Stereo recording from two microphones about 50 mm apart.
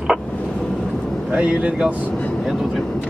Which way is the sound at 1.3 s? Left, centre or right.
Right.